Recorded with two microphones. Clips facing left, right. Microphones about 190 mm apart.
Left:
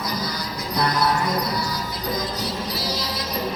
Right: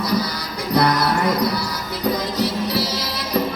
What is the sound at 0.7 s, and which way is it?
Music, 65° right (ahead or behind).